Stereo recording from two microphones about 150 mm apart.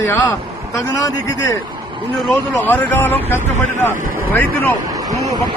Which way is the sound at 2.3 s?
10° left (ahead or behind).